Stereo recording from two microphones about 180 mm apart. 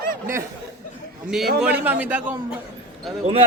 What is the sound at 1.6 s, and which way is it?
Speech, 10° right (ahead or behind).